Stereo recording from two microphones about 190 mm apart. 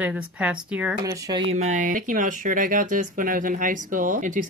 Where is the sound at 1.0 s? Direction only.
25° right (ahead or behind).